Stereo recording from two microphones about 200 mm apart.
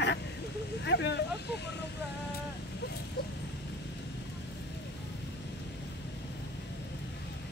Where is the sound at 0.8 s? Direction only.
55° left (ahead or behind).